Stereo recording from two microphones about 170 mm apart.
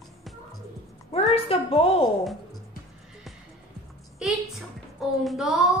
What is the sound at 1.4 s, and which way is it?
Speech, 35° left (ahead or behind).